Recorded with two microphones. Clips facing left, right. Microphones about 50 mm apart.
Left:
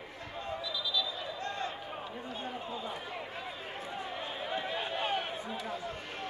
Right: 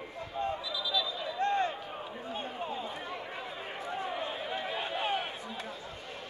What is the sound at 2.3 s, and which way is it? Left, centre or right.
Run, right.